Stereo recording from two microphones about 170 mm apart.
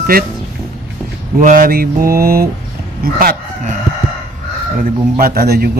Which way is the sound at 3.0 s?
60° right (ahead or behind).